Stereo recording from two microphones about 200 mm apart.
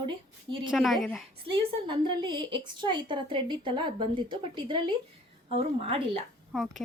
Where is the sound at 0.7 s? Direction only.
Centre (ahead or behind).